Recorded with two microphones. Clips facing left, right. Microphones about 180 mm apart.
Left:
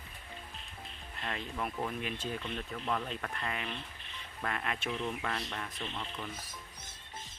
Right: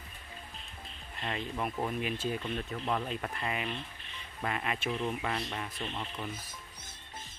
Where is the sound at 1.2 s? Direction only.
5° right (ahead or behind).